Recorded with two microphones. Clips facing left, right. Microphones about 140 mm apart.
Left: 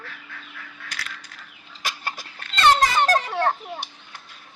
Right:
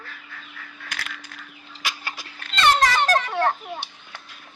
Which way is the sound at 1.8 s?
45° left (ahead or behind).